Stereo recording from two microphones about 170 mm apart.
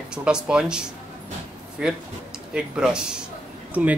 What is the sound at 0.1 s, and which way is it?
Speech, 5° right (ahead or behind).